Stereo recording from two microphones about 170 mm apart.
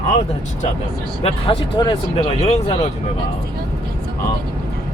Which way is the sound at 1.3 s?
35° left (ahead or behind).